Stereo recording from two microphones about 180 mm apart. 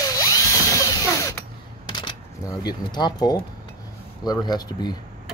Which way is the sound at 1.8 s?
25° left (ahead or behind).